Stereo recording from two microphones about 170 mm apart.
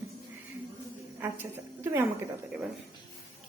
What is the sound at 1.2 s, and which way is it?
Speech, 10° right (ahead or behind).